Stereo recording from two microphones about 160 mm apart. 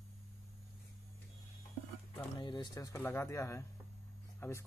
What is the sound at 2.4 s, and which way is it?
Speech, 30° left (ahead or behind).